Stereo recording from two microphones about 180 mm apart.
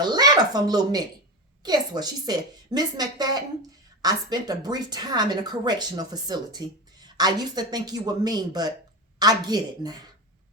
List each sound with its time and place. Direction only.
0.0 s a woman's voice: 25° right (ahead or behind)